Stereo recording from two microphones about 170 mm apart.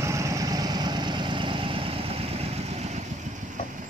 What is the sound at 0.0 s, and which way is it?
Vehicle, 20° right (ahead or behind).